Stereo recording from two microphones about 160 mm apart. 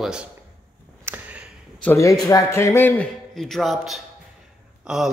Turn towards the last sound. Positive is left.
turn(degrees=0)  # may be behind; listen again after turning